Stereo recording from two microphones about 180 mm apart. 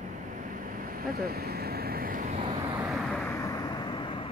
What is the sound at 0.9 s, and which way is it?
Vehicle, 55° right (ahead or behind).